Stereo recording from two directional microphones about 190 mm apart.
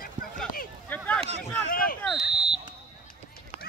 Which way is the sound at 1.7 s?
50° left (ahead or behind).